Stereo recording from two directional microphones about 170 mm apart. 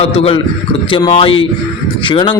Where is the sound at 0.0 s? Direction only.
35° left (ahead or behind).